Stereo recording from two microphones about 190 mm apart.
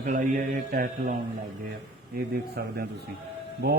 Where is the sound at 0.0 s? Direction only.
40° right (ahead or behind).